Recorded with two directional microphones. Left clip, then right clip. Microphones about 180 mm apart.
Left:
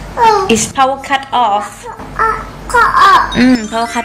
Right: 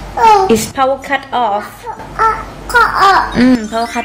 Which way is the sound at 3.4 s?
Centre (ahead or behind).